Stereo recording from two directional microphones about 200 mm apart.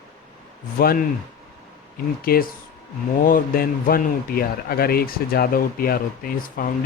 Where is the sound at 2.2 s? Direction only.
50° left (ahead or behind).